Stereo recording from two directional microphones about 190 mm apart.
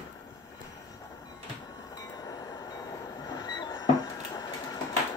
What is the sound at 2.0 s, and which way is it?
Train, 20° left (ahead or behind).